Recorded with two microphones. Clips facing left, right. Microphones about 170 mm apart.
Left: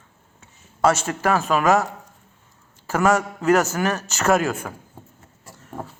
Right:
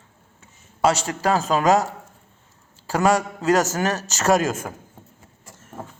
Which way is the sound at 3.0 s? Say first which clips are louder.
Even; 35° right (ahead or behind).